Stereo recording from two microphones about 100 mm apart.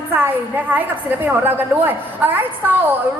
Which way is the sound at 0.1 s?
20° right (ahead or behind).